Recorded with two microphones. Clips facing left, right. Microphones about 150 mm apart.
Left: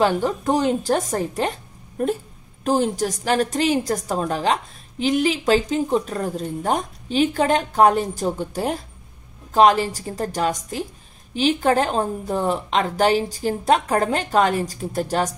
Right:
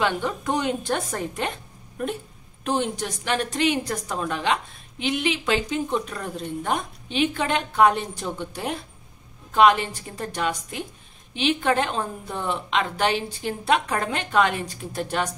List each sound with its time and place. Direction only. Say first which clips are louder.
0.0 s a woman's voice: left 5 dB; 35° left (ahead or behind)